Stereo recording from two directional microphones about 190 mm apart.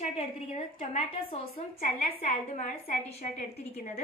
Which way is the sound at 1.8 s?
45° left (ahead or behind).